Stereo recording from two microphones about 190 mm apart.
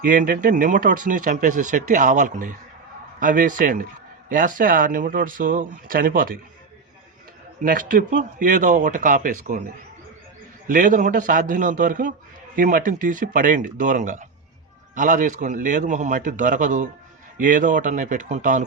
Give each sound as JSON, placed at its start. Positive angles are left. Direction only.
{"t": 0.0, "sound": "speech", "side_deg": -45}
{"t": 7.6, "sound": "speech", "side_deg": -45}
{"t": 10.7, "sound": "speech", "side_deg": -45}